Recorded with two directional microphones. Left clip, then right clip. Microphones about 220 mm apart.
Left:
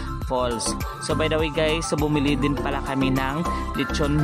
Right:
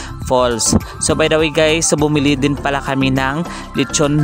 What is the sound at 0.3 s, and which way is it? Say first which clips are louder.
Speech: right 10 dB; 35° right (ahead or behind).